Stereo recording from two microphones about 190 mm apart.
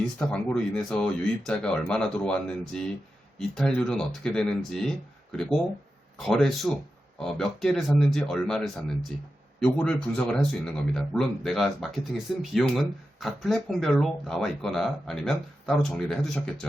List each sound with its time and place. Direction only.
0.2 s speech: 5° left (ahead or behind)
6.1 s speech: centre (ahead or behind)